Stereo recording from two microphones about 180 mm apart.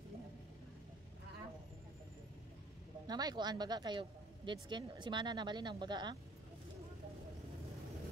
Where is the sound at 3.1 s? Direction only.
20° right (ahead or behind).